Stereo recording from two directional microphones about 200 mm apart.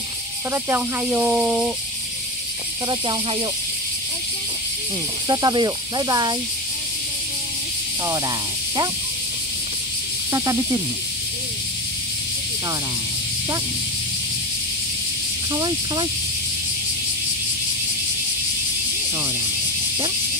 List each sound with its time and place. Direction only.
0.5 s speech: 10° right (ahead or behind)
5.3 s speech: 20° right (ahead or behind)
10.3 s speech: 15° right (ahead or behind)
15.5 s speech: 20° right (ahead or behind)